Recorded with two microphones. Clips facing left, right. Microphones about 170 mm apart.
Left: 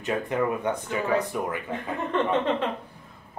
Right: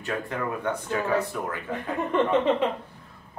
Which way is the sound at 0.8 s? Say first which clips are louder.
Right 2 dB; 15° left (ahead or behind).